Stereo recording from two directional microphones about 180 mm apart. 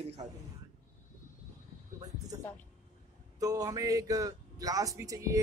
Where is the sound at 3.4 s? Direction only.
20° right (ahead or behind).